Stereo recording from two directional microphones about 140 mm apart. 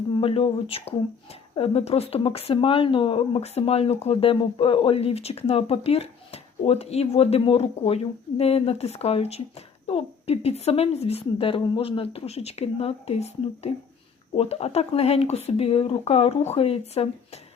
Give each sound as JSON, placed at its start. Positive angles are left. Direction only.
{"t": 0.2, "sound": "speech", "side_deg": 40}